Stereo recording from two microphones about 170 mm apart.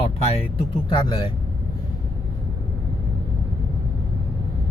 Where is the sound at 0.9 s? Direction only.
30° left (ahead or behind).